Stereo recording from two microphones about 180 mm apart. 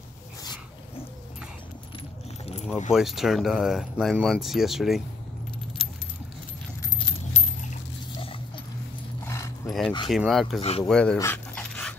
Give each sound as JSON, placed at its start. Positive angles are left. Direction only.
{"t": 2.9, "sound": "speech", "side_deg": 0}
{"t": 6.8, "sound": "keys jangling", "side_deg": 30}
{"t": 9.2, "sound": "dog", "side_deg": 15}
{"t": 9.7, "sound": "a sound", "side_deg": 0}
{"t": 10.0, "sound": "speech", "side_deg": 0}
{"t": 11.1, "sound": "dog", "side_deg": 10}